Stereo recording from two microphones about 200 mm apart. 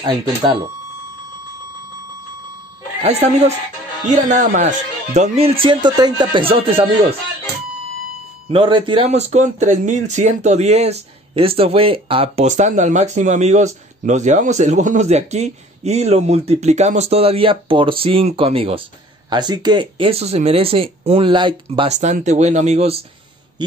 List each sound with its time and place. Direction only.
0.0 s a man's voice: 25° right (ahead or behind)
3.0 s a man's voice: 30° right (ahead or behind)
8.5 s a man's voice: 25° right (ahead or behind)